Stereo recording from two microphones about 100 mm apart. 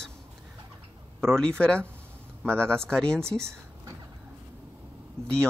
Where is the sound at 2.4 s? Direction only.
25° right (ahead or behind).